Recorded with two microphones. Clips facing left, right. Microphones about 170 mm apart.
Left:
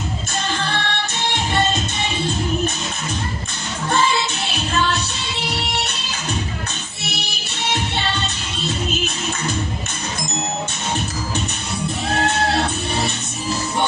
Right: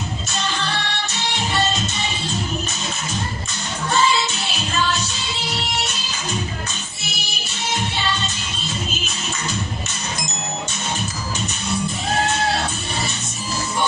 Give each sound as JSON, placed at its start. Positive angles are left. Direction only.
{"t": 0.5, "sound": "music", "side_deg": 55}
{"t": 3.9, "sound": "music", "side_deg": 55}
{"t": 7.2, "sound": "music", "side_deg": 65}